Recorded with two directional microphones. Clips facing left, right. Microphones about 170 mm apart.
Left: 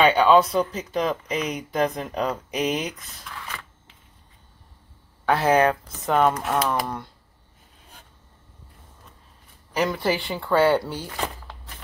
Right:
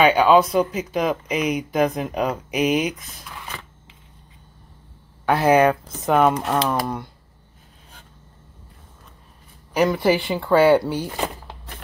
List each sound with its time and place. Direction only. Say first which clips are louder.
0.0 s speech: right 2 dB; 5° right (ahead or behind)
5.2 s speech: right 3 dB; 10° right (ahead or behind)
9.8 s speech: right 5 dB; 10° right (ahead or behind)